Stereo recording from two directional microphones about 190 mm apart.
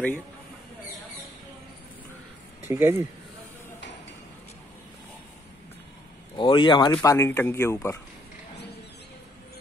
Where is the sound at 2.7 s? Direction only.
10° right (ahead or behind).